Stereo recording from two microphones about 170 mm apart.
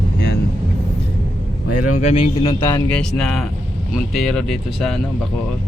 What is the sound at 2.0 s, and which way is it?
Speech, 40° left (ahead or behind).